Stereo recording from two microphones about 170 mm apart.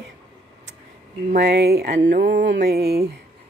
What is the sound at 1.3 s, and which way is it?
Speech, 70° right (ahead or behind).